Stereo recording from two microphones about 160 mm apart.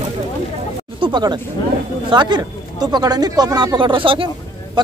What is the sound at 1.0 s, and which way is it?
Chatter, 30° right (ahead or behind).